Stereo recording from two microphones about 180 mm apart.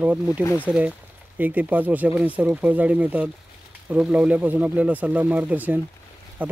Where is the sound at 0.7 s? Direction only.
5° right (ahead or behind).